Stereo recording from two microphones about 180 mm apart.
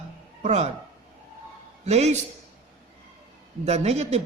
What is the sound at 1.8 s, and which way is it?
Speech, 40° right (ahead or behind).